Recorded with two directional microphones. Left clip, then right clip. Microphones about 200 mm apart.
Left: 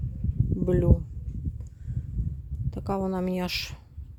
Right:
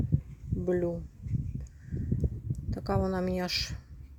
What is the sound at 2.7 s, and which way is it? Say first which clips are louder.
Speech: left 1 dB; 15° left (ahead or behind).